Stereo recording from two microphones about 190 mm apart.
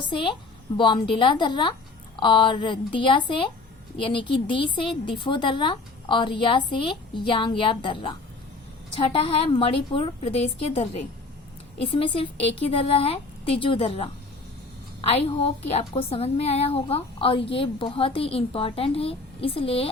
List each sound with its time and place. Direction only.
0.8 s a woman's voice: 25° left (ahead or behind)
11.9 s a woman's voice: 25° left (ahead or behind)